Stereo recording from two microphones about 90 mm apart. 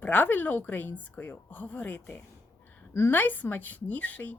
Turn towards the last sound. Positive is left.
turn(degrees=15)  # may be behind; listen again after turning